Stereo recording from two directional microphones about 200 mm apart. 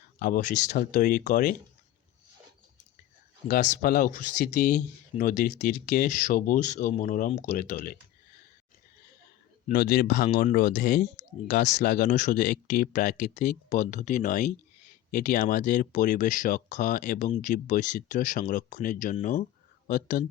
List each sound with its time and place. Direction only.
0.2 s speech: 45° left (ahead or behind)
3.5 s speech: 40° left (ahead or behind)
9.7 s speech: 50° left (ahead or behind)